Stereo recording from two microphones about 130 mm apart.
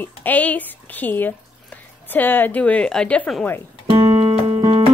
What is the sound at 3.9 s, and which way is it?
Music, 35° right (ahead or behind).